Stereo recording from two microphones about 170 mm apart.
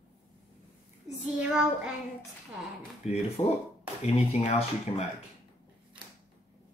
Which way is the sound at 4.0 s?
40° left (ahead or behind).